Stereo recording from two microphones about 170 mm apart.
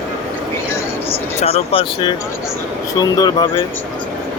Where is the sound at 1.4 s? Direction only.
35° left (ahead or behind).